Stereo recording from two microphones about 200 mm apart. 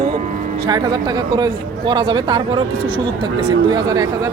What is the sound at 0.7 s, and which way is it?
Speech, 20° right (ahead or behind).